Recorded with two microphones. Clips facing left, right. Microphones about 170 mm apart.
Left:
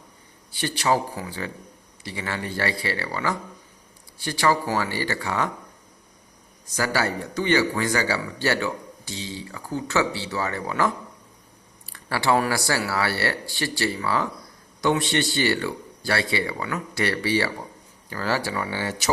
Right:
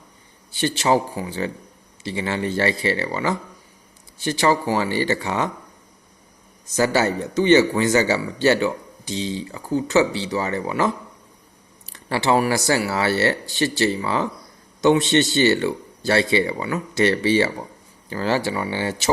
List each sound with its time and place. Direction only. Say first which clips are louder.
0.5 s a man's voice: right 4 dB; 25° right (ahead or behind)
6.7 s a man's voice: right 6 dB; 20° right (ahead or behind)